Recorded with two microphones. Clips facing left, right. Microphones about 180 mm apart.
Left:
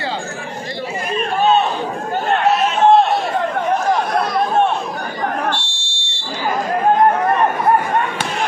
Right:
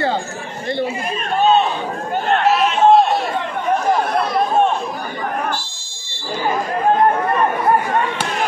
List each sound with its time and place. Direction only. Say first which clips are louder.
5.7 s fire alarm: left 6 dB; 30° left (ahead or behind)